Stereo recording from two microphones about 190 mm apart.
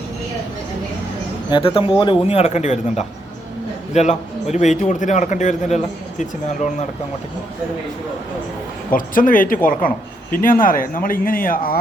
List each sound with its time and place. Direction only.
1.5 s a man's voice: 25° left (ahead or behind)
8.9 s speech: 45° left (ahead or behind)